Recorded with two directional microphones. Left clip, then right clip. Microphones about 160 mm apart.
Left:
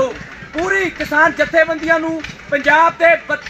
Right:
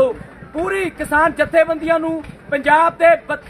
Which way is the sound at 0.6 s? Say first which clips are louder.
Left 3 dB; 30° right (ahead or behind).